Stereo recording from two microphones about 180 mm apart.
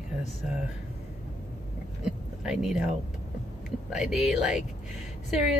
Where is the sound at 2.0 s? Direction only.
5° right (ahead or behind).